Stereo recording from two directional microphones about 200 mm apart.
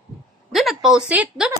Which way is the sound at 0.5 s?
Centre (ahead or behind).